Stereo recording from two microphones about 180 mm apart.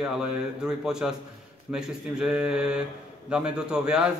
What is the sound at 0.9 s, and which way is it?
Speech, 5° right (ahead or behind).